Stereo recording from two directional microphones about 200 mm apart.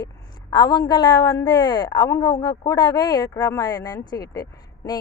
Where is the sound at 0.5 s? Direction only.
20° left (ahead or behind).